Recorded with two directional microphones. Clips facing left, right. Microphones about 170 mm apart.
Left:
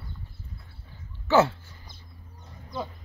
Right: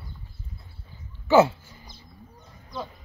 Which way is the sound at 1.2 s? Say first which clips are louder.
Right 3 dB; 10° right (ahead or behind).